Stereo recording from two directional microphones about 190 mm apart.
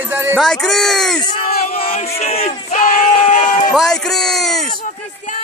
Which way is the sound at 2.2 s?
35° left (ahead or behind).